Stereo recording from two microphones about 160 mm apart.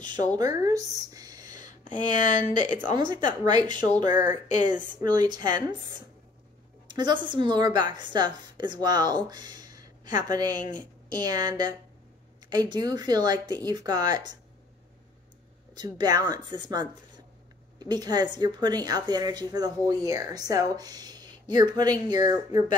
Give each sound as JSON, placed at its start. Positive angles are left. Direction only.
{"t": 0.4, "sound": "speech", "side_deg": -20}
{"t": 1.5, "sound": "speech", "side_deg": 50}
{"t": 3.0, "sound": "a woman's voice", "side_deg": -30}
{"t": 6.9, "sound": "a woman's voice", "side_deg": -30}
{"t": 15.7, "sound": "a woman's voice", "side_deg": -25}